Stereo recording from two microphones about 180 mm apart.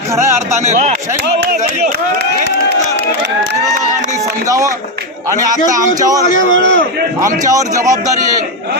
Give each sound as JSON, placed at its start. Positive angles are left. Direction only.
{"t": 0.6, "sound": "speech", "side_deg": -40}
{"t": 1.4, "sound": "speech", "side_deg": -55}
{"t": 4.4, "sound": "speech", "side_deg": -20}
{"t": 6.2, "sound": "a man's voice", "side_deg": 50}
{"t": 7.2, "sound": "a man's voice", "side_deg": -20}